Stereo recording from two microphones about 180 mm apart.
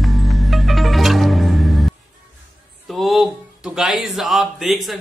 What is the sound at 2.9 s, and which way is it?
Speech, centre (ahead or behind).